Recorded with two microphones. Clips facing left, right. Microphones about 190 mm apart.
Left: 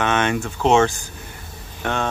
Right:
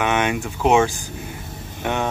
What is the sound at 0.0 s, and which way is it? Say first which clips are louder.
Speech: even; 15° right (ahead or behind).